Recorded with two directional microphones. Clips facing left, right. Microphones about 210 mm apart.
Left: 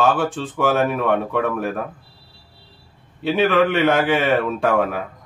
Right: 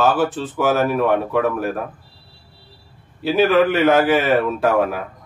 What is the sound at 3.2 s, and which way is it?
A man's voice, centre (ahead or behind).